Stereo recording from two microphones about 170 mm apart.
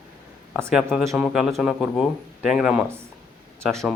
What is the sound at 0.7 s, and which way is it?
Speech, centre (ahead or behind).